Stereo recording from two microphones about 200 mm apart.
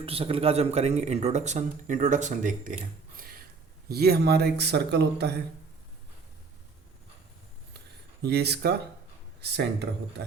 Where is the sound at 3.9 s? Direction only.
50° right (ahead or behind).